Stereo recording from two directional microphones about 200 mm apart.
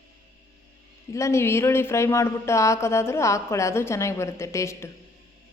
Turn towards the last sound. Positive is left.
turn(degrees=15)  # may be behind; listen again after turning